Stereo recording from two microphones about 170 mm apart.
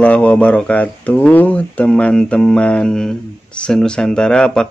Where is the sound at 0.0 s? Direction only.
10° left (ahead or behind).